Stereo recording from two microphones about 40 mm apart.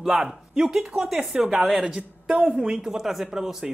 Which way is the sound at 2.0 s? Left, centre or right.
Right.